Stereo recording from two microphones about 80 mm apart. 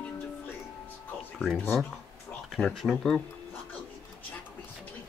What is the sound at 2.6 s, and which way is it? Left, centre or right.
Speech, centre.